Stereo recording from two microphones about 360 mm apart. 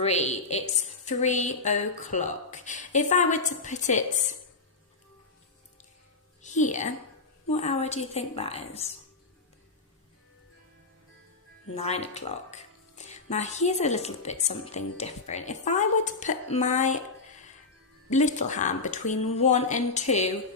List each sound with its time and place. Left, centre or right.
0.0 s speech: centre
6.4 s a woman's voice: centre
11.7 s speech: centre
18.1 s speech: centre